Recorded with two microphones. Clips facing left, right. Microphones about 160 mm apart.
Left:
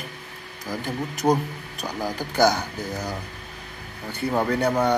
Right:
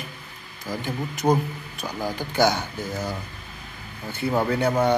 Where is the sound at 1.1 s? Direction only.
Centre (ahead or behind).